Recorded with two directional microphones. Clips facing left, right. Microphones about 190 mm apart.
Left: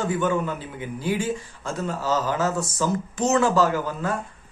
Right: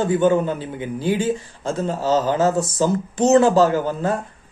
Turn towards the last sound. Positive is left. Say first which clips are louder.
# right 5 dB
turn(degrees=-30)  # may be behind; listen again after turning